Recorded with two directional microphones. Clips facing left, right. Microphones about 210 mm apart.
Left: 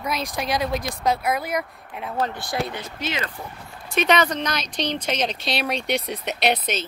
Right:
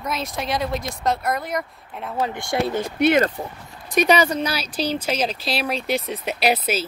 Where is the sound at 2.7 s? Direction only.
55° right (ahead or behind).